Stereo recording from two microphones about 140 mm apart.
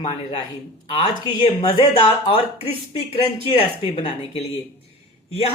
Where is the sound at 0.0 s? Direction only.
35° left (ahead or behind).